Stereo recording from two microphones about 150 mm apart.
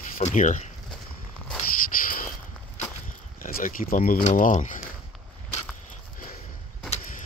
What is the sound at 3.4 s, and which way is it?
Speech, 70° left (ahead or behind).